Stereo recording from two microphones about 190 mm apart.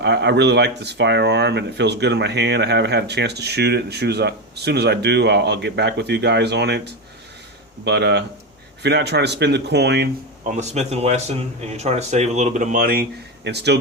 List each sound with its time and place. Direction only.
0.0 s speech: 65° right (ahead or behind)
7.9 s speech: 65° right (ahead or behind)
10.6 s a man's voice: 35° right (ahead or behind); by 13.7 s 65° right (ahead or behind)